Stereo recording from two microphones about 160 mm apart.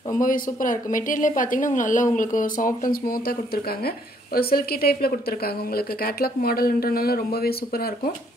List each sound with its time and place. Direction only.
0.1 s a woman's voice: 55° left (ahead or behind)